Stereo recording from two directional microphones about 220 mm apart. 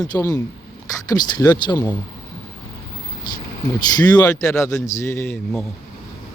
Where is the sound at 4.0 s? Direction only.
20° left (ahead or behind).